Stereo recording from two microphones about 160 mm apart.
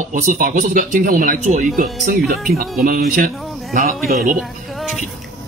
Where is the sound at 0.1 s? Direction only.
55° right (ahead or behind).